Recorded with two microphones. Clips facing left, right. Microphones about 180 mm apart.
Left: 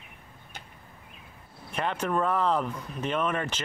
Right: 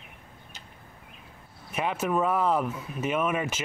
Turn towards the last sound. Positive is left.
turn(degrees=-10)  # may be behind; listen again after turning